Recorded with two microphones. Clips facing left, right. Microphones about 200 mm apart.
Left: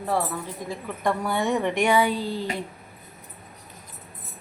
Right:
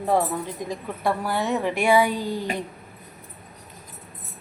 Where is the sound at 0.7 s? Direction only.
10° right (ahead or behind).